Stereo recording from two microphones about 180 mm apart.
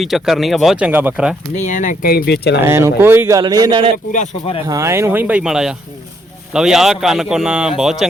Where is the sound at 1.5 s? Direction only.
45° left (ahead or behind); by 2.6 s 70° left (ahead or behind).